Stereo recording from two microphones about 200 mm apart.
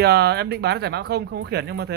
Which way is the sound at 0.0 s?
55° right (ahead or behind).